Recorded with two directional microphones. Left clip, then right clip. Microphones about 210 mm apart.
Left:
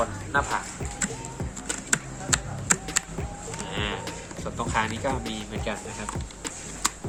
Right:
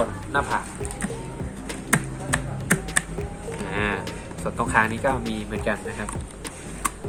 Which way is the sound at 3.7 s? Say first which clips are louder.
Right 5 dB; 10° right (ahead or behind).